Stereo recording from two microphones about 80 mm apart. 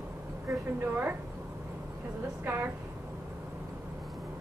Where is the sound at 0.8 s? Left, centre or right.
Right.